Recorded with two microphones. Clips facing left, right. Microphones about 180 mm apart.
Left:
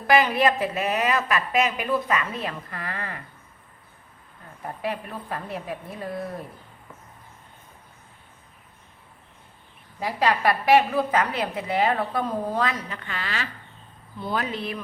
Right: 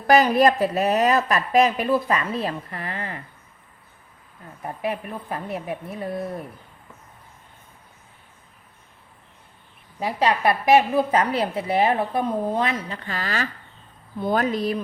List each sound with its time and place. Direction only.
0.1 s a woman's voice: 40° right (ahead or behind); by 3.2 s 25° right (ahead or behind)
4.6 s a woman's voice: 20° right (ahead or behind)
10.0 s a woman's voice: 20° right (ahead or behind); by 14.8 s 40° right (ahead or behind)